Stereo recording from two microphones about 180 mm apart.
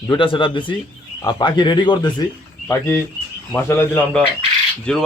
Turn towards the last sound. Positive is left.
turn(degrees=5)  # may be behind; listen again after turning